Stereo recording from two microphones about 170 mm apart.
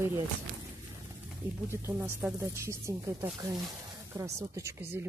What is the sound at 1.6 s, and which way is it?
Speech, 15° right (ahead or behind).